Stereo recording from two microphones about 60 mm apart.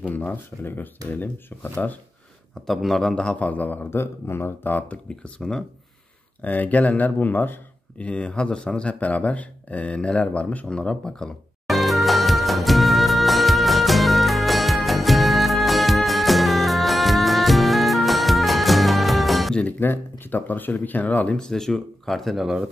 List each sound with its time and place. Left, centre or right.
0.0 s speech: left
2.6 s a man's voice: centre; by 3.8 s left
3.9 s speech: left
4.7 s speech: left
6.4 s speech: left; by 11.2 s centre
11.6 s music: centre
19.8 s speech: left
21.4 s speech: centre